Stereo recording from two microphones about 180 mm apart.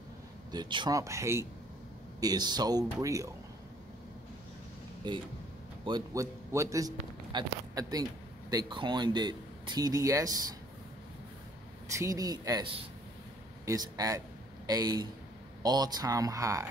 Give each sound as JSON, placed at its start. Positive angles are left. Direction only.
{"t": 0.5, "sound": "a man's voice", "side_deg": -25}
{"t": 5.1, "sound": "a man's voice", "side_deg": -25}
{"t": 11.9, "sound": "speech", "side_deg": -20}